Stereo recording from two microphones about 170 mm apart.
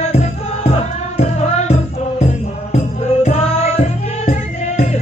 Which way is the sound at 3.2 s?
35° left (ahead or behind).